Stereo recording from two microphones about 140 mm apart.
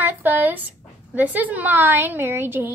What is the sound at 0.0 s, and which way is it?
A woman's voice, 15° right (ahead or behind).